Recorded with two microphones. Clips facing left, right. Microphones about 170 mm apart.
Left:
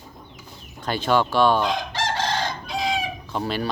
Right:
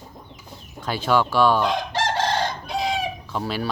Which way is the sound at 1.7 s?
60° right (ahead or behind).